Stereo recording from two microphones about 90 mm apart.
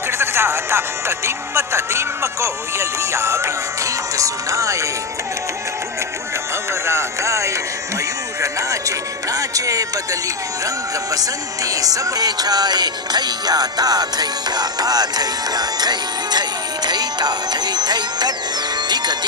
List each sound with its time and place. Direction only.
0.2 s speech: 30° right (ahead or behind)
6.7 s speech: 30° right (ahead or behind)
10.6 s music: 40° right (ahead or behind)